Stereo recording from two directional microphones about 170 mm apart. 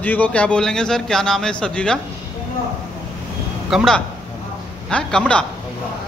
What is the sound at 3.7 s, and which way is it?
A man's voice, centre (ahead or behind).